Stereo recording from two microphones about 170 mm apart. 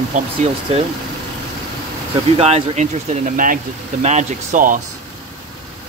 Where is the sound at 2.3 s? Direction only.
35° right (ahead or behind).